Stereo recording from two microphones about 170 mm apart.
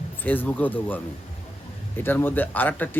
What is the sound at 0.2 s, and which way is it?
Speech, 10° left (ahead or behind).